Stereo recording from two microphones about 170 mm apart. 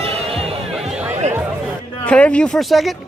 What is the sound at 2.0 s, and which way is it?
Speech, 5° left (ahead or behind).